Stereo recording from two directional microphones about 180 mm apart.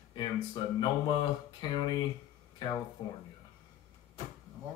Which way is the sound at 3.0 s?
30° left (ahead or behind).